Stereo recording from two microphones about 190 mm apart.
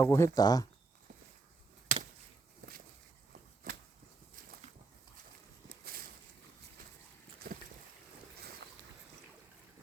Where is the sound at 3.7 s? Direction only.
45° right (ahead or behind).